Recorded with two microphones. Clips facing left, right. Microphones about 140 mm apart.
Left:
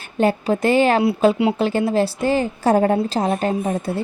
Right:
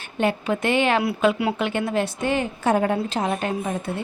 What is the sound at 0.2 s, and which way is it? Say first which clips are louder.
A woman's voice: left 5 dB; 35° left (ahead or behind).